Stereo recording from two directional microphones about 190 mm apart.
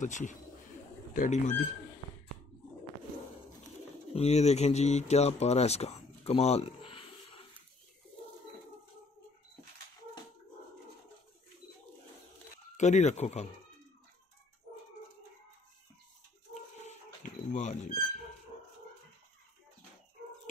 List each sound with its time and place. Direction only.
0.0 s speech: 40° left (ahead or behind)
4.1 s speech: 35° left (ahead or behind)
12.7 s speech: 35° left (ahead or behind)
16.7 s a sound: 40° left (ahead or behind)